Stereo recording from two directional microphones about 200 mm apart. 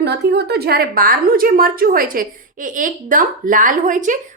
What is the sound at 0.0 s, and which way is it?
A woman's voice, 55° right (ahead or behind).